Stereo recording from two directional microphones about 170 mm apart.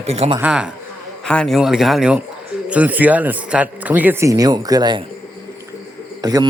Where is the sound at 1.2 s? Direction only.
5° left (ahead or behind); by 5.0 s 25° right (ahead or behind).